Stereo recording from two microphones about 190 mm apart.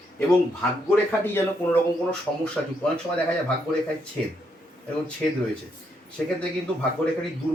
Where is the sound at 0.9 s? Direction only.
10° left (ahead or behind).